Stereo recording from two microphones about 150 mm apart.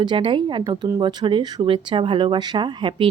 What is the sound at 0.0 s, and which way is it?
A woman's voice, 30° right (ahead or behind).